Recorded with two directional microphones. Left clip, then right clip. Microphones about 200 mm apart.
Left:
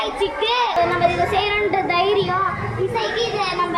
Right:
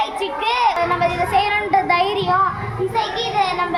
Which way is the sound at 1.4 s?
55° right (ahead or behind).